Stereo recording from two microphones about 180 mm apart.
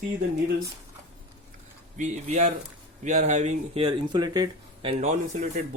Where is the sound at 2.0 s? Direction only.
40° right (ahead or behind).